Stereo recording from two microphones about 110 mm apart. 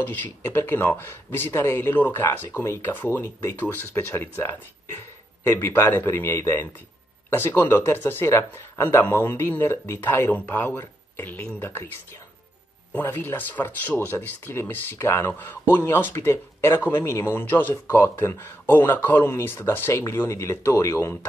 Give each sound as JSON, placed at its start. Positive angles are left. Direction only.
{"t": 0.0, "sound": "speech", "side_deg": 15}
{"t": 12.9, "sound": "speech", "side_deg": 15}